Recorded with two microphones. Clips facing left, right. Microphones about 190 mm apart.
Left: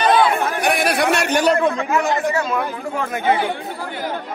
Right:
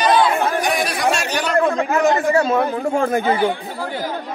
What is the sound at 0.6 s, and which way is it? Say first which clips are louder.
Chatter: left 2 dB; 60° left (ahead or behind).